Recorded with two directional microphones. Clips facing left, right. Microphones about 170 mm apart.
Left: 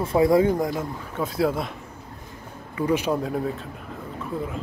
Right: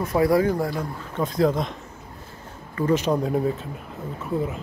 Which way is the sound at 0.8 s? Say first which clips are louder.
Right 1 dB; 5° left (ahead or behind).